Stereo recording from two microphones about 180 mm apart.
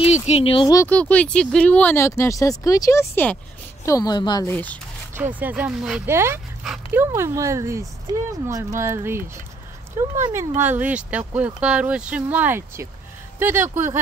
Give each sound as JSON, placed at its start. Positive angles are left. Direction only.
{"t": 0.0, "sound": "speech", "side_deg": 35}
{"t": 0.7, "sound": "a woman's voice", "side_deg": 10}
{"t": 4.5, "sound": "speech", "side_deg": 10}
{"t": 5.1, "sound": "speech", "side_deg": -10}
{"t": 6.0, "sound": "speech", "side_deg": -15}